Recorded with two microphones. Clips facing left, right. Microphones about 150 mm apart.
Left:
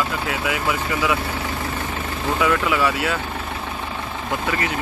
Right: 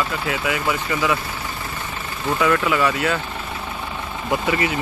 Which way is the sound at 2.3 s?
5° left (ahead or behind).